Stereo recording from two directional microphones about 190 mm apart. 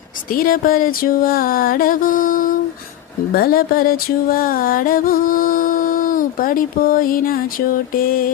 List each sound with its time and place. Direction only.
0.3 s music: 50° left (ahead or behind)